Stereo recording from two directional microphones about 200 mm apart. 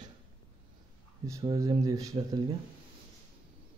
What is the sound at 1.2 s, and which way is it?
Speech, 15° right (ahead or behind).